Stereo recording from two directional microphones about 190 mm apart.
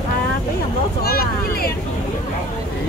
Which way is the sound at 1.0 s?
50° left (ahead or behind).